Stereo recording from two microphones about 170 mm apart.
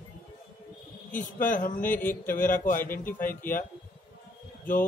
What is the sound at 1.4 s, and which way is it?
Speech, 55° left (ahead or behind).